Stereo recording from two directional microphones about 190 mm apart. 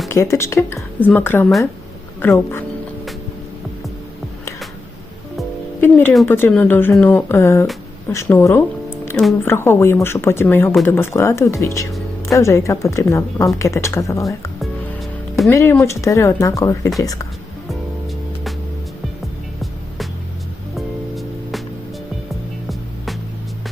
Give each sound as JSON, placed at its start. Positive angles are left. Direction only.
{"t": 0.1, "sound": "speech", "side_deg": 15}
{"t": 5.8, "sound": "speech", "side_deg": 10}
{"t": 20.7, "sound": "music", "side_deg": 0}